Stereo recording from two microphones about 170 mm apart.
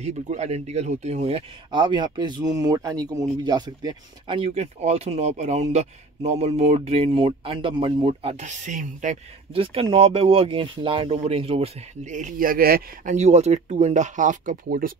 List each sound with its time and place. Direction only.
0.0 s speech: 40° right (ahead or behind)
9.5 s speech: 30° right (ahead or behind); by 13.1 s 60° right (ahead or behind)
13.1 s speech: 40° right (ahead or behind)